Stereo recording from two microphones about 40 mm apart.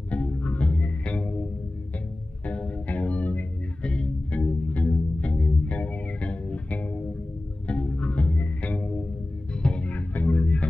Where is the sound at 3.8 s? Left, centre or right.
Left.